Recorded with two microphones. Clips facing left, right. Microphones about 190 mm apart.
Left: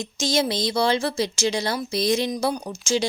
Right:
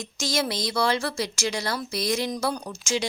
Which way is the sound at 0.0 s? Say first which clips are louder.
Left 4 dB; 20° left (ahead or behind).